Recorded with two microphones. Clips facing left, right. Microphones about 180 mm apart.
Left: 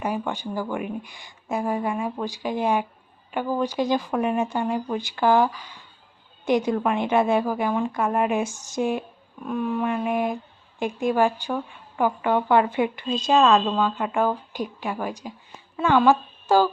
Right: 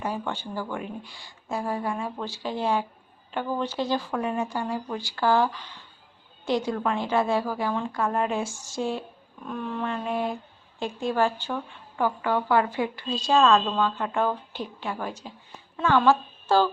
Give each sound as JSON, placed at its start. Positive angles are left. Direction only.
{"t": 0.0, "sound": "a woman's voice", "side_deg": 15}